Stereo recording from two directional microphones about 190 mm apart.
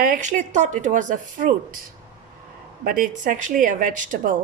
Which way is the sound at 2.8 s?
45° right (ahead or behind).